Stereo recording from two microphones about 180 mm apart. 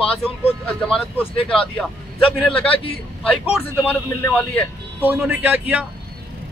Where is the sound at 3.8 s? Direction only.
10° left (ahead or behind).